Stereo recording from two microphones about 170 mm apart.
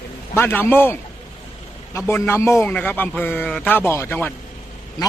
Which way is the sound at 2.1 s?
15° left (ahead or behind).